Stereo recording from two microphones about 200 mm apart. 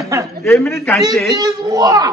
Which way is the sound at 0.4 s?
5° left (ahead or behind).